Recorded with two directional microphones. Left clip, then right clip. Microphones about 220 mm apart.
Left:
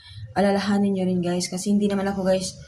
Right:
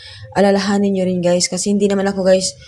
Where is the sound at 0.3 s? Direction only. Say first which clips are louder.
Right 7 dB; 30° right (ahead or behind).